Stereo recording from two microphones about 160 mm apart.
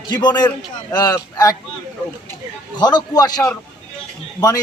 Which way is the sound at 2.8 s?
30° left (ahead or behind).